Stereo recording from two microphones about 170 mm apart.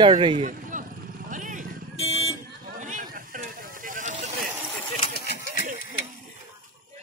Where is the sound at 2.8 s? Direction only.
50° right (ahead or behind).